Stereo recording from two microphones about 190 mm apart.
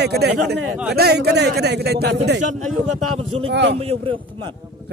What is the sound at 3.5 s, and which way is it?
Speech, 65° right (ahead or behind).